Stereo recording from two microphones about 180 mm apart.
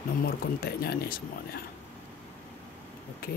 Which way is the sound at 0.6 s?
60° left (ahead or behind).